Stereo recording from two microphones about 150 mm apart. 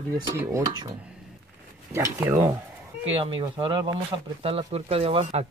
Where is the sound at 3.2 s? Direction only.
35° right (ahead or behind).